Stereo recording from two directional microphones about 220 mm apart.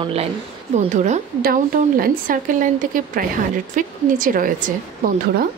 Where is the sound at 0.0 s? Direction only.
25° right (ahead or behind).